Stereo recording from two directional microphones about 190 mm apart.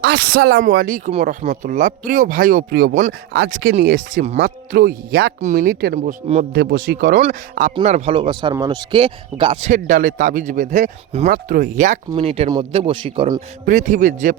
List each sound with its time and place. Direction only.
0.0 s speech: 55° right (ahead or behind)
5.5 s speech: 65° right (ahead or behind)
5.9 s speech: 40° right (ahead or behind)
6.5 s speech: 55° right (ahead or behind)
7.9 s a man's voice: 35° right (ahead or behind)
11.3 s a man's voice: 50° right (ahead or behind); by 13.2 s 30° right (ahead or behind)
13.7 s speech: 40° right (ahead or behind)